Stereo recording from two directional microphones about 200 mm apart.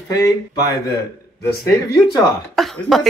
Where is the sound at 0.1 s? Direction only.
20° left (ahead or behind).